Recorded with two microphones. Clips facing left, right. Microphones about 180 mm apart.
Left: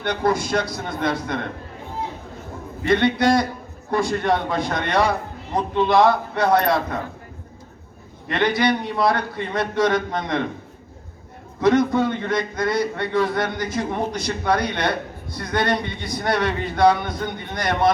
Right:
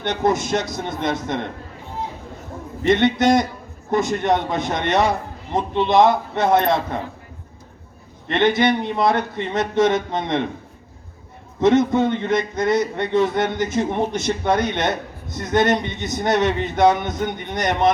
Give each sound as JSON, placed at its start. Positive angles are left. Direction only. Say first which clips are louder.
{"t": 0.0, "sound": "a man's voice", "louder": "right 1 dB", "side_deg": -20}
{"t": 2.8, "sound": "a man's voice", "louder": "right 2 dB", "side_deg": -20}
{"t": 8.3, "sound": "a man's voice", "louder": "right 2 dB", "side_deg": -25}
{"t": 11.6, "sound": "a man's voice", "louder": "right 2 dB", "side_deg": -25}